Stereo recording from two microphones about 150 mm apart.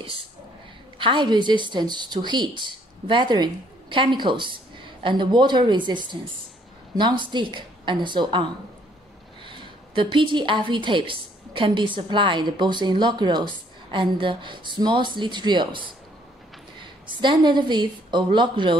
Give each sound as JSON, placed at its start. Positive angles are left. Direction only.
{"t": 0.9, "sound": "a woman's voice", "side_deg": -30}